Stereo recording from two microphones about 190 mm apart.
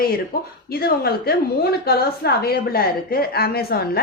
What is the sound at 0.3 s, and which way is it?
A woman's voice, 50° left (ahead or behind).